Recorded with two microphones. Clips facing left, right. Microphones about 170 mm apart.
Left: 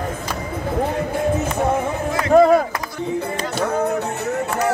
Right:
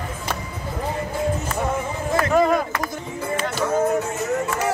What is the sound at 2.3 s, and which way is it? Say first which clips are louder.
Run: left 7 dB; 40° left (ahead or behind).